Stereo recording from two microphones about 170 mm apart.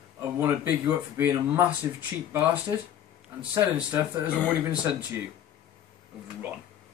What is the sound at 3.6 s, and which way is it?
Speech, 10° right (ahead or behind).